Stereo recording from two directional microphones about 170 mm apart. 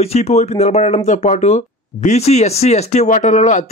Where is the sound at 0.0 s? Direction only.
40° left (ahead or behind).